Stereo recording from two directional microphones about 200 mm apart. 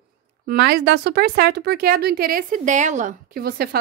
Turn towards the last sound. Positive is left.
turn(degrees=-50)  # may be behind; listen again after turning